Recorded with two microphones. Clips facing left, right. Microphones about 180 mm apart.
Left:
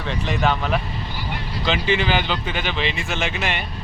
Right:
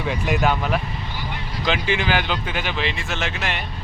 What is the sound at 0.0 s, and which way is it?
Speech, 10° right (ahead or behind).